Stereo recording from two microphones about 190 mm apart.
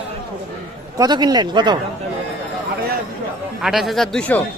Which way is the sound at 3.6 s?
Centre (ahead or behind).